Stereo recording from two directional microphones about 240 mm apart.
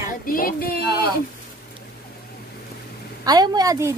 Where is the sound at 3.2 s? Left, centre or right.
Centre.